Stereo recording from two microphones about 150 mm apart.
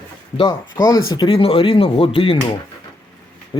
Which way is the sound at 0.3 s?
30° left (ahead or behind).